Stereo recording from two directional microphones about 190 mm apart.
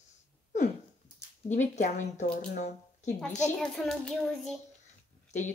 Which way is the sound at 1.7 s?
40° left (ahead or behind).